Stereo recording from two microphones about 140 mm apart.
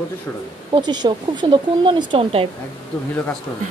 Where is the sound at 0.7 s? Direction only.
30° right (ahead or behind).